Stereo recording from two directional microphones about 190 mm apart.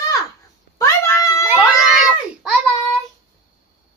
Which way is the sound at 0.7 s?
15° left (ahead or behind).